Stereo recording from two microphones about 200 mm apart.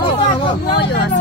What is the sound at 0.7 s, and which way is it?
Speech, 55° left (ahead or behind).